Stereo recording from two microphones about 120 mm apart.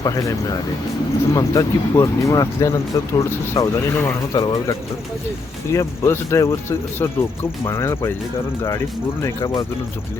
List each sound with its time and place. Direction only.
0.0 s speech: 30° left (ahead or behind)
5.7 s speech: 25° left (ahead or behind)